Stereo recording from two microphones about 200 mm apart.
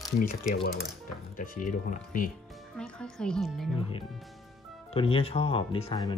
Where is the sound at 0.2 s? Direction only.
45° left (ahead or behind).